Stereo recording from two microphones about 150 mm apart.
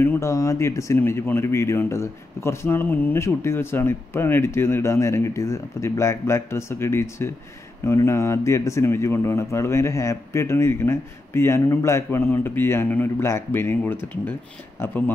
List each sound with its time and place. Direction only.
0.0 s speech: 20° left (ahead or behind)